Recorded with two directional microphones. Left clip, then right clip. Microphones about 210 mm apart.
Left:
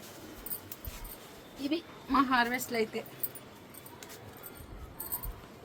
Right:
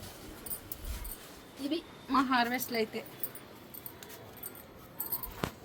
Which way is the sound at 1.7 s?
5° left (ahead or behind).